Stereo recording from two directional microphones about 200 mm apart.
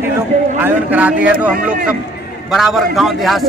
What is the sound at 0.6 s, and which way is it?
A man's voice, 10° right (ahead or behind).